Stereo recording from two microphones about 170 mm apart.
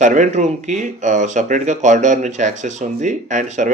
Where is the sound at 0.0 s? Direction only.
45° right (ahead or behind).